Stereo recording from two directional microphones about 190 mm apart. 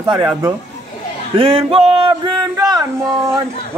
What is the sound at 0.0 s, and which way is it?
Speech, 20° right (ahead or behind).